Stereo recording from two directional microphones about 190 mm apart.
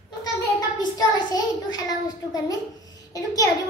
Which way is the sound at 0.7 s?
20° left (ahead or behind).